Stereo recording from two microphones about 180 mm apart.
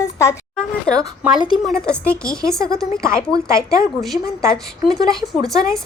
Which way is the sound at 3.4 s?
15° right (ahead or behind).